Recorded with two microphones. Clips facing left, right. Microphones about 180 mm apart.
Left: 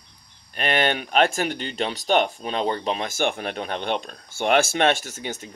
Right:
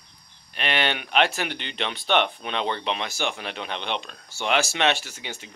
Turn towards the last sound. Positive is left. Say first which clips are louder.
# left 5 dB
turn(degrees=45)  # may be behind; listen again after turning